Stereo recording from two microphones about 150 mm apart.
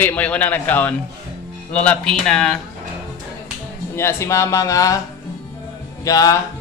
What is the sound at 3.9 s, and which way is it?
A woman's voice, 15° left (ahead or behind).